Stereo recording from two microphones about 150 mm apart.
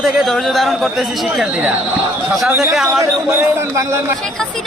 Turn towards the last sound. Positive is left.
turn(degrees=-15)  # may be behind; listen again after turning